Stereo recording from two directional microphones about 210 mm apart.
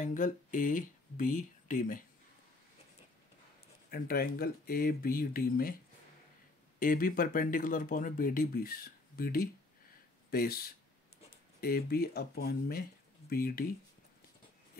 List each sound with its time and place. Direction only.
0.0 s speech: 40° left (ahead or behind)
3.9 s speech: 45° left (ahead or behind)
6.8 s speech: 40° left (ahead or behind)